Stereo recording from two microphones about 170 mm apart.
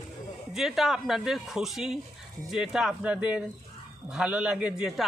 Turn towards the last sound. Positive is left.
turn(degrees=-5)  # may be behind; listen again after turning